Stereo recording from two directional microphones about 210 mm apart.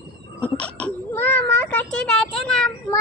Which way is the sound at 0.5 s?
5° left (ahead or behind).